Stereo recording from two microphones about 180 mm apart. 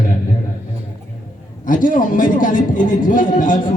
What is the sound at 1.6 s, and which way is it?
A man's voice, 45° left (ahead or behind).